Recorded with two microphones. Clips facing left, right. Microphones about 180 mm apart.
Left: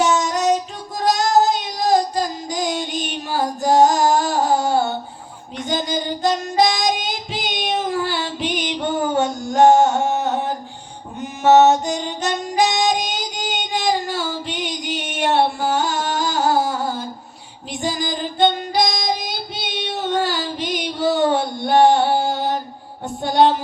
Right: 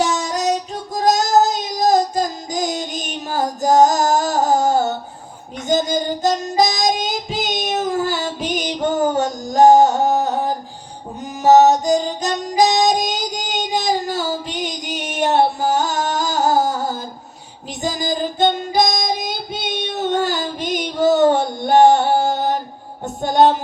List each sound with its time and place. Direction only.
0.0 s child singing: 35° right (ahead or behind)
11.2 s music: 40° right (ahead or behind)
17.8 s child singing: 45° right (ahead or behind)